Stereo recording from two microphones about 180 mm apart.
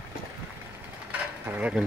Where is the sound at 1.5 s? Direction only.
10° right (ahead or behind).